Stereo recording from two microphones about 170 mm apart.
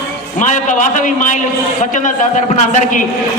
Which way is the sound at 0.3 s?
45° left (ahead or behind).